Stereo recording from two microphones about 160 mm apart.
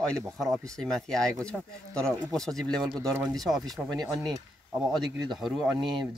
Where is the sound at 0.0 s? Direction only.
5° left (ahead or behind).